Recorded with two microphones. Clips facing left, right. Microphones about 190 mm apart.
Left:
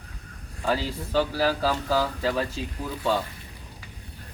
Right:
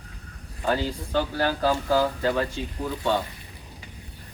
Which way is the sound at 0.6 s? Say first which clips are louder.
Right 1 dB; centre (ahead or behind).